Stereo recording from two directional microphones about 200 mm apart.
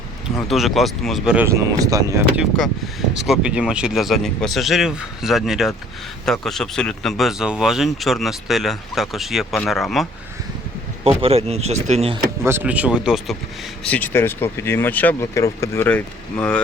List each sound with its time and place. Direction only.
0.3 s speech: centre (ahead or behind)
11.0 s speech: 30° right (ahead or behind)
12.4 s speech: 10° right (ahead or behind); by 16.6 s 5° left (ahead or behind)